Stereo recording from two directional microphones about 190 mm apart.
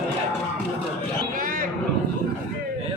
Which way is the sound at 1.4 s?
45° right (ahead or behind).